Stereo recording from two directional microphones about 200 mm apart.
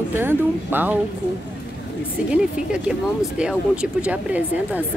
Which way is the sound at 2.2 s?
5° right (ahead or behind).